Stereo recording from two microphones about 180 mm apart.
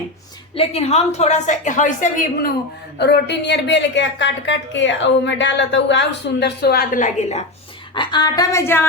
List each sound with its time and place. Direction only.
0.5 s a woman's voice: 35° left (ahead or behind)
3.0 s a woman's voice: 70° left (ahead or behind); by 7.4 s 40° left (ahead or behind)
7.9 s a woman's voice: 25° left (ahead or behind)